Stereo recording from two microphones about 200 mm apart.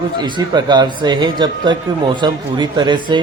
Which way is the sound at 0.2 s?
20° right (ahead or behind).